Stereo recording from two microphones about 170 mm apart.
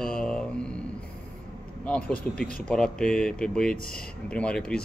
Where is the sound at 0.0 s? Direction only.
5° left (ahead or behind).